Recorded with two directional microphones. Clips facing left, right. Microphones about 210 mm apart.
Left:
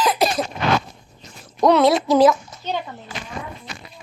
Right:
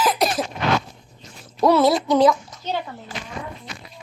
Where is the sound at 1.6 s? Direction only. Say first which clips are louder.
Left 1 dB; centre (ahead or behind).